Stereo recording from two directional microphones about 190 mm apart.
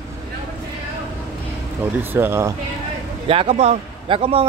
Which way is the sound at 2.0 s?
10° right (ahead or behind).